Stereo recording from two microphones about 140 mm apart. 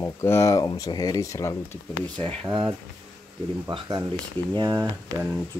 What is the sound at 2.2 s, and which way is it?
Speech, 35° right (ahead or behind).